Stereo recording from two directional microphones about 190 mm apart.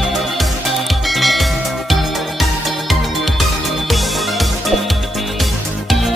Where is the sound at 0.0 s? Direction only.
Centre (ahead or behind).